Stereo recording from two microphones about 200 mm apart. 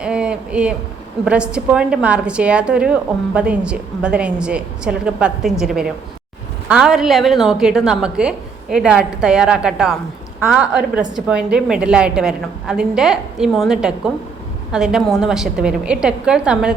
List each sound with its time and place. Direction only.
0.0 s a woman's voice: 5° right (ahead or behind)